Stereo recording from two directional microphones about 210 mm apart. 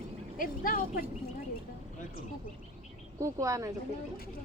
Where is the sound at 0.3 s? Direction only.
40° left (ahead or behind).